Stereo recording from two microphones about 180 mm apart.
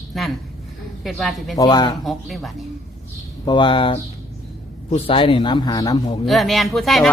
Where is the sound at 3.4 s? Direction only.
25° left (ahead or behind).